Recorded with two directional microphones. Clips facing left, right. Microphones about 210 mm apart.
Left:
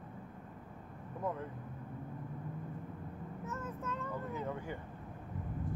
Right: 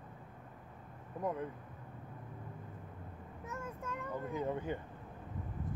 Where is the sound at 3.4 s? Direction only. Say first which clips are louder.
Left 1 dB; 10° right (ahead or behind).